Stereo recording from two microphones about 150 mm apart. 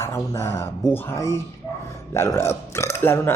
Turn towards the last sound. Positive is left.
turn(degrees=15)  # may be behind; listen again after turning